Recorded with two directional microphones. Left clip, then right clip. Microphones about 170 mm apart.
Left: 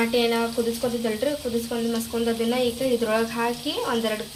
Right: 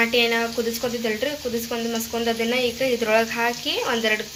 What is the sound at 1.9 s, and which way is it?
Speech, 5° right (ahead or behind).